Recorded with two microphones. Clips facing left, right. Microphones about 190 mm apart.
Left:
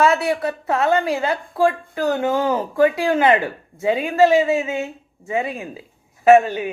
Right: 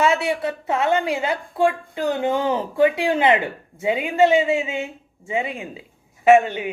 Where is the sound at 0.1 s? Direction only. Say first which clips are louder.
Left 2 dB; 30° left (ahead or behind).